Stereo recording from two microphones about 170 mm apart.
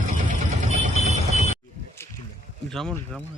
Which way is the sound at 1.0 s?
40° right (ahead or behind).